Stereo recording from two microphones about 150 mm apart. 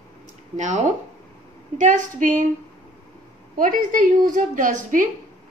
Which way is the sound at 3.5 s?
65° right (ahead or behind).